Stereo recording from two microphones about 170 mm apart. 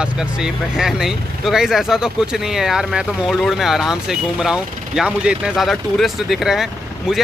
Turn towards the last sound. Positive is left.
turn(degrees=0)  # may be behind; listen again after turning